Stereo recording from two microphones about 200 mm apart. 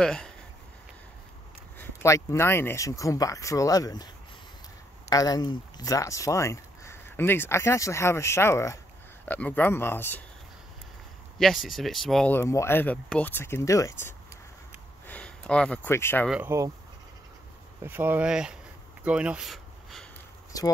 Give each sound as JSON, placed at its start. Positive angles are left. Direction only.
{"t": 0.0, "sound": "speech", "side_deg": 5}
{"t": 1.8, "sound": "speech", "side_deg": 15}
{"t": 5.1, "sound": "speech", "side_deg": 20}
{"t": 11.3, "sound": "speech", "side_deg": 0}
{"t": 16.3, "sound": "speech", "side_deg": -10}
{"t": 17.8, "sound": "speech", "side_deg": -10}